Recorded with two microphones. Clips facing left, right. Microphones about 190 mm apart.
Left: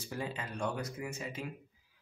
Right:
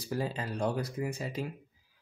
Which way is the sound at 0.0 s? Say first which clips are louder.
Right 5 dB; 35° right (ahead or behind).